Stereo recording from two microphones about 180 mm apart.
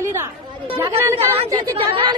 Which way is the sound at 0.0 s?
15° right (ahead or behind).